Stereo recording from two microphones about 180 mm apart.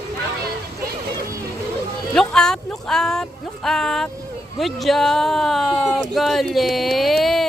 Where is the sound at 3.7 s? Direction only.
Centre (ahead or behind).